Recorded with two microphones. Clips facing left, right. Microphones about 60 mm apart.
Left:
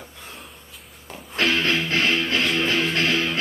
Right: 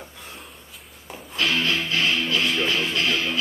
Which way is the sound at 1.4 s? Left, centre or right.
Left.